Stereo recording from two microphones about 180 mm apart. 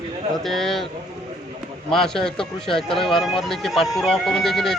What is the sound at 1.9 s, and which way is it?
Speech, centre (ahead or behind).